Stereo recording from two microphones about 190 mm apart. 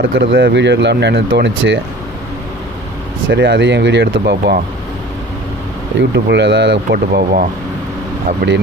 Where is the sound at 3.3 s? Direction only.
65° right (ahead or behind).